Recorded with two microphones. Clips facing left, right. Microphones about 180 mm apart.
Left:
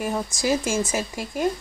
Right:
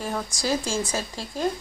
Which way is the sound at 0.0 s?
15° left (ahead or behind).